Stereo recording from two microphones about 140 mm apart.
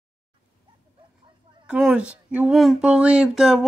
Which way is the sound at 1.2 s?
35° right (ahead or behind).